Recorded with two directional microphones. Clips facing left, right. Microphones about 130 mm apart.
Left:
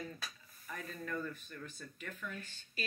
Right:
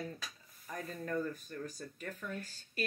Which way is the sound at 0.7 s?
35° right (ahead or behind).